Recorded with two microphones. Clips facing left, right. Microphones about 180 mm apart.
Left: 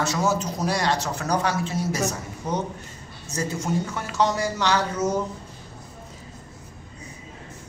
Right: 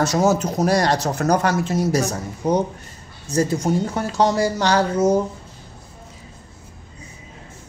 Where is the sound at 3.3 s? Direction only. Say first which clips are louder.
Right 7 dB; 35° right (ahead or behind).